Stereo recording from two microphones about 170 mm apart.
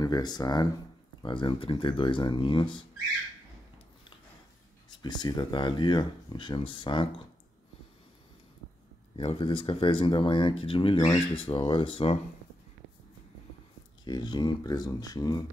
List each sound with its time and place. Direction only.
0.0 s speech: 25° left (ahead or behind)
4.8 s speech: 25° left (ahead or behind)
9.1 s speech: 30° left (ahead or behind)
14.0 s speech: 25° left (ahead or behind)